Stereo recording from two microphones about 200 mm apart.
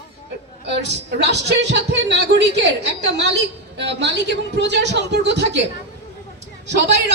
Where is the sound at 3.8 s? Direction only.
60° right (ahead or behind).